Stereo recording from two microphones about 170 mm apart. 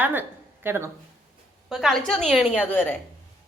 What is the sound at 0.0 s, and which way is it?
Speech, 10° right (ahead or behind).